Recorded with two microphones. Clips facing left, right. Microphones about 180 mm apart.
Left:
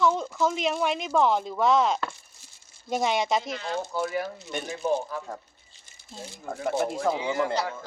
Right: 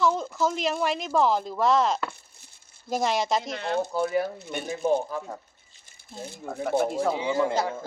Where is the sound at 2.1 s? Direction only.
60° right (ahead or behind).